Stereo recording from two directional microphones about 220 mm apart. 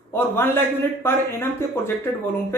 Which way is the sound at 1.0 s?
10° left (ahead or behind).